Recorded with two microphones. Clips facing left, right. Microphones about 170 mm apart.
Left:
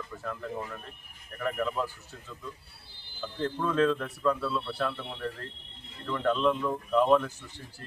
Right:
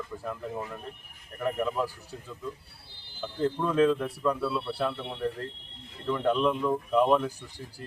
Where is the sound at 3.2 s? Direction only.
10° right (ahead or behind).